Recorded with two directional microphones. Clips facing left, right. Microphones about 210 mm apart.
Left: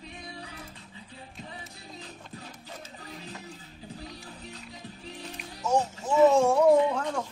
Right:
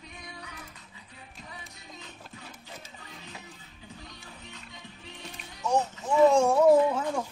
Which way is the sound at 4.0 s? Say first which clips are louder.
Left 5 dB; 35° left (ahead or behind).